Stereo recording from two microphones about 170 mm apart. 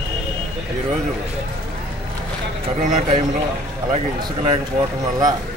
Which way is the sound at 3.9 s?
25° right (ahead or behind).